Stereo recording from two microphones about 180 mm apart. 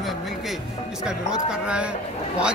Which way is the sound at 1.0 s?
5° right (ahead or behind).